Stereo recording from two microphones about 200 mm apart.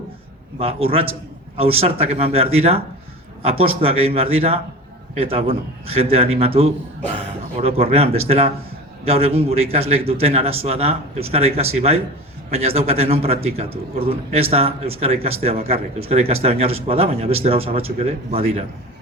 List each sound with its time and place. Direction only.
0.6 s speech: 30° right (ahead or behind)